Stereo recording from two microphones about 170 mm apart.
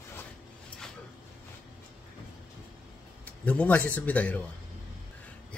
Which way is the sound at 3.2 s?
10° left (ahead or behind).